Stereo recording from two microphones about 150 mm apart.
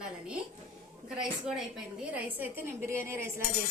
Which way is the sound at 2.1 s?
10° right (ahead or behind).